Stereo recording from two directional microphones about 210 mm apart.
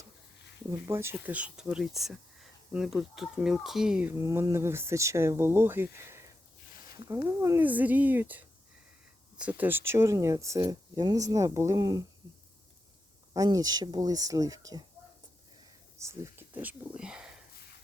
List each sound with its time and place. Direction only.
0.9 s speech: 10° right (ahead or behind)
4.2 s speech: 15° right (ahead or behind)
13.3 s speech: 15° right (ahead or behind)
16.0 s speech: 15° right (ahead or behind)